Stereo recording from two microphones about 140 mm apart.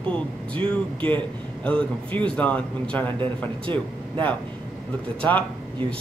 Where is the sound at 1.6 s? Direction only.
10° left (ahead or behind).